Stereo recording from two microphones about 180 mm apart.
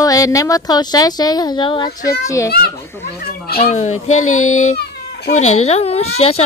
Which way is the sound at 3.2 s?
60° left (ahead or behind).